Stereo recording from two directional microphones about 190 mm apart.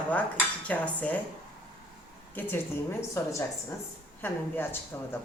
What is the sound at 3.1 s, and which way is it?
A woman's voice, 15° left (ahead or behind).